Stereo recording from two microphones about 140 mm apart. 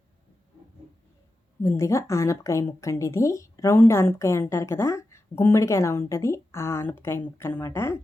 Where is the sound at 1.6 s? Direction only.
20° left (ahead or behind).